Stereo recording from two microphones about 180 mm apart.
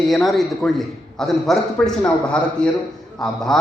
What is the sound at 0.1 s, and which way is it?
A man's voice, centre (ahead or behind).